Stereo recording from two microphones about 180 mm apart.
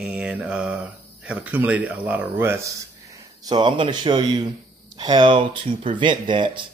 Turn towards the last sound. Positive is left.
turn(degrees=-25)  # may be behind; listen again after turning